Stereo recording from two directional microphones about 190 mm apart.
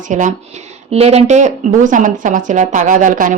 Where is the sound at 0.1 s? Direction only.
40° right (ahead or behind).